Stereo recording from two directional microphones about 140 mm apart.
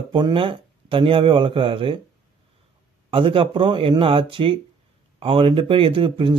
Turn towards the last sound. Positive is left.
turn(degrees=-40)  # may be behind; listen again after turning